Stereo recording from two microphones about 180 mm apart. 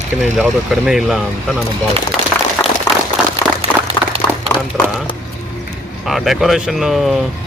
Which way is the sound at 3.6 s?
35° right (ahead or behind).